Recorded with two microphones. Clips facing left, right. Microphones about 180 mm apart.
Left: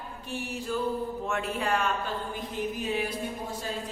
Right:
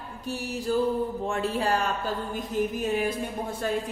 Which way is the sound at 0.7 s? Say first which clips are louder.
Right 5 dB; 35° right (ahead or behind).